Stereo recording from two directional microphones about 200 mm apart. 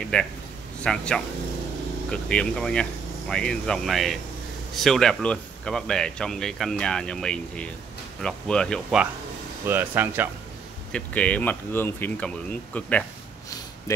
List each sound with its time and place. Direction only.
0.0 s speech: 5° left (ahead or behind)
10.9 s speech: 5° left (ahead or behind)